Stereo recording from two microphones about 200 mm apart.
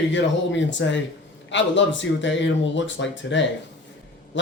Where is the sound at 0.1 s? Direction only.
65° left (ahead or behind).